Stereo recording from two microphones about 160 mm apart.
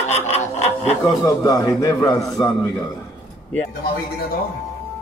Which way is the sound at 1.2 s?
25° left (ahead or behind).